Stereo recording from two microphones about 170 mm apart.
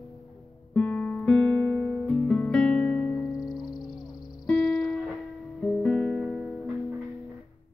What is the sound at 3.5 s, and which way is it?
Music, 25° left (ahead or behind).